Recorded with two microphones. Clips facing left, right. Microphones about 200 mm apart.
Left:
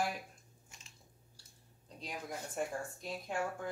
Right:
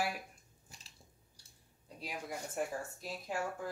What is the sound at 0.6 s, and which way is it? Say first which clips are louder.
Biting: right 3 dB; 35° right (ahead or behind).